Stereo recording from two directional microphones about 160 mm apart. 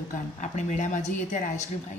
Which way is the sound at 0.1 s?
50° left (ahead or behind).